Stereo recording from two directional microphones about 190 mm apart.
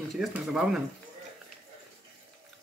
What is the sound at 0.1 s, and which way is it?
Speech, 5° right (ahead or behind).